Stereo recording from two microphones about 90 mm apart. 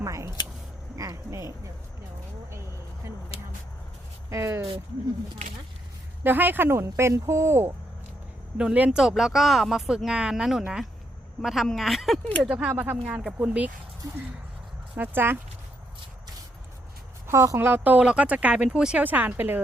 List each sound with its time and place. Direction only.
0.0 s a sound: 35° right (ahead or behind)
0.9 s speech: 35° right (ahead or behind)
4.3 s speech: 30° right (ahead or behind)
6.2 s speech: 20° right (ahead or behind)
8.5 s speech: 15° right (ahead or behind)
12.5 s speech: 15° right (ahead or behind)
14.9 s speech: 20° right (ahead or behind)
17.2 s speech: 35° right (ahead or behind)
17.6 s speech: 20° right (ahead or behind)